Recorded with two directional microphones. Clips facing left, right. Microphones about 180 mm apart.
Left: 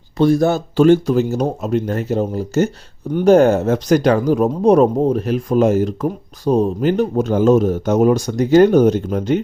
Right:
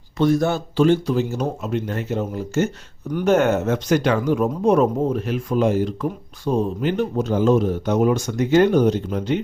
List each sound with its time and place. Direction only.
0.2 s speech: 35° left (ahead or behind)